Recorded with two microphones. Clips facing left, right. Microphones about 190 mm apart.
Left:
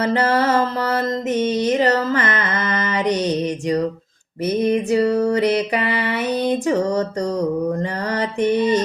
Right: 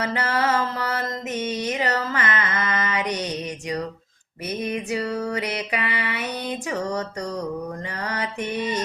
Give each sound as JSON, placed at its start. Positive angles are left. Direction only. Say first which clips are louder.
{"t": 0.0, "sound": "music", "louder": "left 6 dB", "side_deg": 35}
{"t": 1.5, "sound": "a sound", "louder": "left 8 dB", "side_deg": 35}
{"t": 4.6, "sound": "music", "louder": "left 9 dB", "side_deg": 35}
{"t": 5.5, "sound": "mantra", "louder": "left 7 dB", "side_deg": 40}
{"t": 6.7, "sound": "music", "louder": "left 8 dB", "side_deg": 35}
{"t": 7.8, "sound": "mantra", "louder": "left 7 dB", "side_deg": 35}